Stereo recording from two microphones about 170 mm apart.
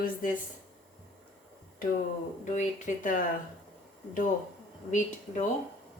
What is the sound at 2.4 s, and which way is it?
Speech, 45° left (ahead or behind).